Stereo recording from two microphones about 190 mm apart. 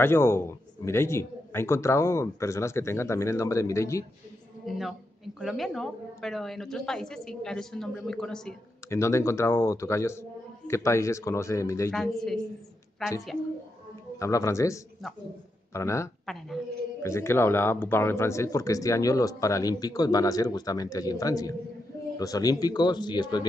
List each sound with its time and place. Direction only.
0.0 s speech: 15° left (ahead or behind)
4.6 s speech: centre (ahead or behind)
8.8 s speech: 15° left (ahead or behind)
12.2 s speech: centre (ahead or behind)
14.1 s speech: 15° left (ahead or behind)